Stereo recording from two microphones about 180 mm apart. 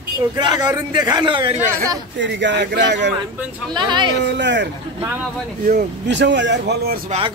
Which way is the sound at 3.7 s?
25° right (ahead or behind).